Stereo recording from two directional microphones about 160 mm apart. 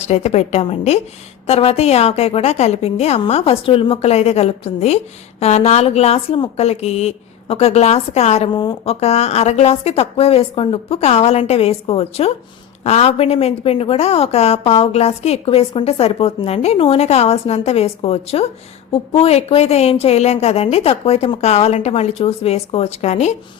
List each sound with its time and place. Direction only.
0.0 s a woman's voice: 45° left (ahead or behind)